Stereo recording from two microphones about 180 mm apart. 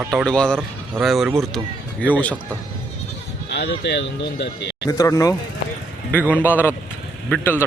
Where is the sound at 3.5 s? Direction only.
75° left (ahead or behind).